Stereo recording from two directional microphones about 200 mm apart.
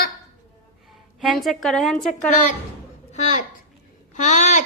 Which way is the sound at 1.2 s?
Centre (ahead or behind).